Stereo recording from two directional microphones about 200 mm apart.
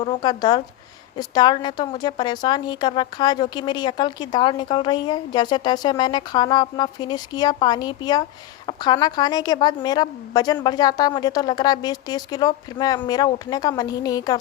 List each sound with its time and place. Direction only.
0.0 s a woman's voice: 25° left (ahead or behind)